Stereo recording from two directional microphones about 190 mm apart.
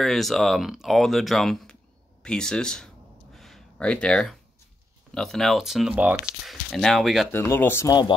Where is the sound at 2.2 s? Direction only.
5° left (ahead or behind).